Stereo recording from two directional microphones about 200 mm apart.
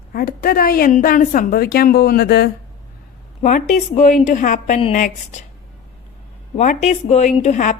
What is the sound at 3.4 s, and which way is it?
Speech, 40° left (ahead or behind).